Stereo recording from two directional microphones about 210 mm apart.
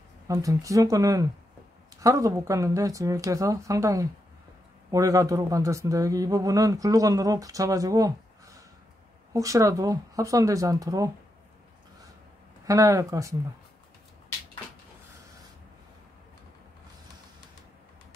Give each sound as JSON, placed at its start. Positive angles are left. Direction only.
{"t": 0.3, "sound": "speech", "side_deg": -15}
{"t": 9.3, "sound": "speech", "side_deg": -15}
{"t": 12.6, "sound": "speech", "side_deg": -15}